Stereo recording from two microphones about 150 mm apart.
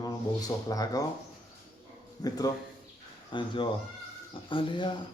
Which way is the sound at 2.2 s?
25° left (ahead or behind).